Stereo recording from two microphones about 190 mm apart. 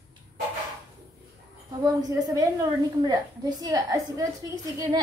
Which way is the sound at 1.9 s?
20° right (ahead or behind).